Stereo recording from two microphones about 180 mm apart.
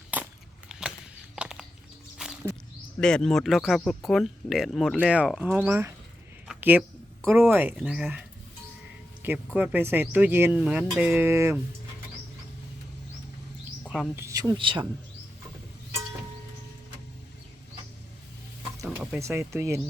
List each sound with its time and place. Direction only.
0.1 s crackle: 10° right (ahead or behind)
0.7 s a sound: 5° right (ahead or behind)
2.1 s music: 5° right (ahead or behind)
3.0 s speech: 5° left (ahead or behind)
6.5 s a sound: 10° right (ahead or behind)
7.3 s speech: 10° right (ahead or behind)
9.2 s speech: 10° right (ahead or behind)
13.8 s bird: centre (ahead or behind)
14.2 s speech: 20° right (ahead or behind)
18.9 s speech: 10° right (ahead or behind)